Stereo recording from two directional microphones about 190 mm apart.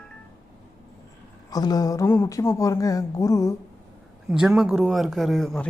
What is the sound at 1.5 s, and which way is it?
A woman's voice, 20° left (ahead or behind).